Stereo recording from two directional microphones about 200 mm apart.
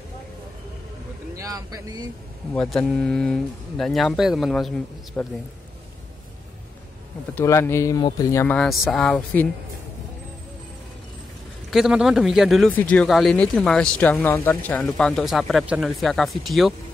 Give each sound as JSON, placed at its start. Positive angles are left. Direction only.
{"t": 1.3, "sound": "speech", "side_deg": -15}
{"t": 2.5, "sound": "speech", "side_deg": 5}
{"t": 7.3, "sound": "speech", "side_deg": 10}
{"t": 11.7, "sound": "speech", "side_deg": -5}